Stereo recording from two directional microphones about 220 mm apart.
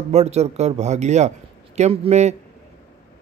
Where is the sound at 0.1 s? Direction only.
30° right (ahead or behind).